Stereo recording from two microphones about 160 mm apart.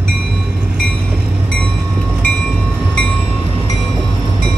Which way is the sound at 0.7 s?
Centre (ahead or behind).